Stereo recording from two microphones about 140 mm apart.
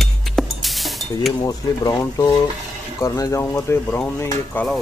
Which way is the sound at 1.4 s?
25° left (ahead or behind).